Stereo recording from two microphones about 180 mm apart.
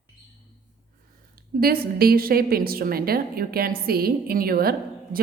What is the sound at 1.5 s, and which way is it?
A woman's voice, 55° right (ahead or behind).